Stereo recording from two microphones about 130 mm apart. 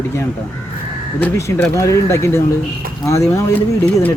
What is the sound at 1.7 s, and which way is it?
Speech, 25° left (ahead or behind).